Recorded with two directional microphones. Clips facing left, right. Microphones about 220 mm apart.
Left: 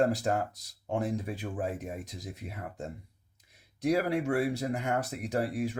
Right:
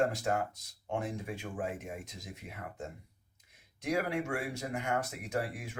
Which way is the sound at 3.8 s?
35° left (ahead or behind).